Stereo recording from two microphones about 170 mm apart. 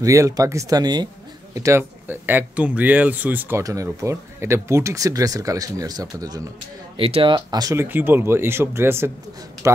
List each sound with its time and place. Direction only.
0.0 s speech: 20° right (ahead or behind)
7.0 s speech: 35° right (ahead or behind); by 9.1 s 15° right (ahead or behind)